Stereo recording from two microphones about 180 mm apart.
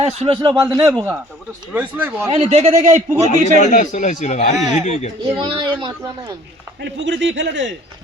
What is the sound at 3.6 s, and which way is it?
Speech, 40° left (ahead or behind).